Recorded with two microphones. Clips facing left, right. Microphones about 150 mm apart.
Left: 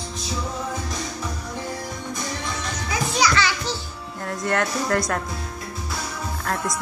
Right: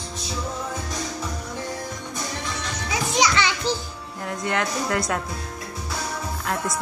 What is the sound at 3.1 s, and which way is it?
Music, 20° right (ahead or behind).